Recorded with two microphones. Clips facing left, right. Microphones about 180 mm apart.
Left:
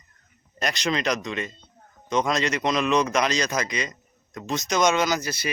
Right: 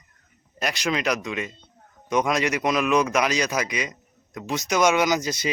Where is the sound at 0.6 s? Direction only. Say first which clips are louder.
Even; 5° right (ahead or behind).